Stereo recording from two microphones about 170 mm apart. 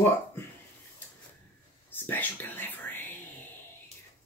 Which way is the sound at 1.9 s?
10° left (ahead or behind).